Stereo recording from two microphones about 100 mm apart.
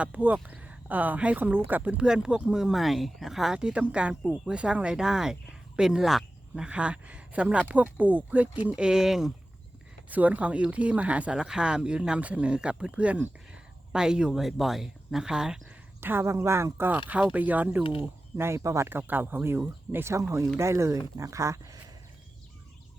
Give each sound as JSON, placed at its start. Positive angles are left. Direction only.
{"t": 0.0, "sound": "speech", "side_deg": -15}
{"t": 10.1, "sound": "speech", "side_deg": -15}
{"t": 16.0, "sound": "speech", "side_deg": -25}
{"t": 18.9, "sound": "speech", "side_deg": -20}